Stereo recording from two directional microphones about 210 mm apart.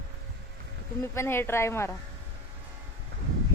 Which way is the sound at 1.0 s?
10° left (ahead or behind).